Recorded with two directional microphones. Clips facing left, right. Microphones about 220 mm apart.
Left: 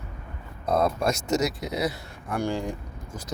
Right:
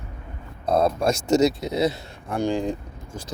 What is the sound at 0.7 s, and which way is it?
Speech, 30° right (ahead or behind).